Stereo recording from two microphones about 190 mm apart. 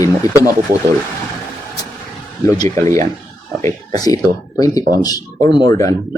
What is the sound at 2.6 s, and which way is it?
Speech, 15° left (ahead or behind).